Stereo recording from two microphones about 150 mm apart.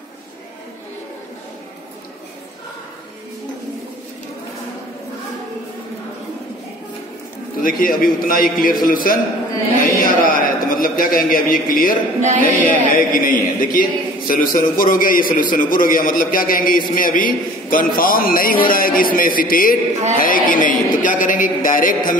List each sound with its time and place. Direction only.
7.6 s a man's voice: 70° left (ahead or behind)